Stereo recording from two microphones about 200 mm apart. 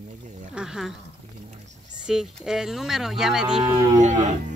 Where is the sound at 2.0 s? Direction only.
Centre (ahead or behind).